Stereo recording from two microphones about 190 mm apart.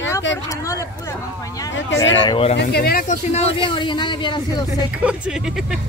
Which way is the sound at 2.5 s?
60° left (ahead or behind).